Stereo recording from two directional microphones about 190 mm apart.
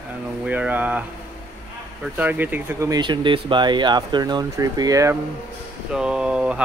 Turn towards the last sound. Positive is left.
turn(degrees=-5)  # may be behind; listen again after turning